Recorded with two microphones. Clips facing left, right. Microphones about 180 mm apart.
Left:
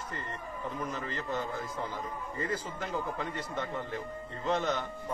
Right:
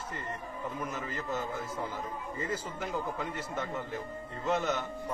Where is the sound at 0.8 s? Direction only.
5° right (ahead or behind).